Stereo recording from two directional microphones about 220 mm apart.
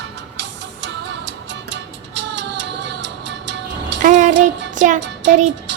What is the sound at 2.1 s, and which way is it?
Music, 55° right (ahead or behind).